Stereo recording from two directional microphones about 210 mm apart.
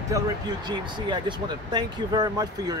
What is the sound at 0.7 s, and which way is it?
Speech, 20° right (ahead or behind).